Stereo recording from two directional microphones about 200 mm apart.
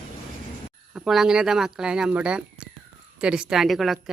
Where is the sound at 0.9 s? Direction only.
Centre (ahead or behind).